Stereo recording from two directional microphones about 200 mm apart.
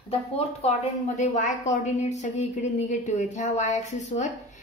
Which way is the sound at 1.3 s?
35° left (ahead or behind).